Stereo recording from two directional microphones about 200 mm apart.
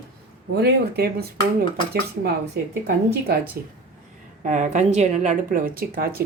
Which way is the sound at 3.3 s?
55° right (ahead or behind).